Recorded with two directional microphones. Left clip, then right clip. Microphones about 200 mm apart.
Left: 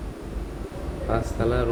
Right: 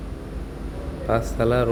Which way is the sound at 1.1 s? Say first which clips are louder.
Right 4 dB; 40° right (ahead or behind).